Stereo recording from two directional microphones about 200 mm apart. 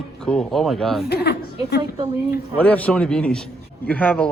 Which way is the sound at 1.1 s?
50° left (ahead or behind).